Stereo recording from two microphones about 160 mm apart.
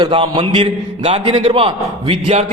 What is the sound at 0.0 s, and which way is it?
A man's voice, 30° right (ahead or behind).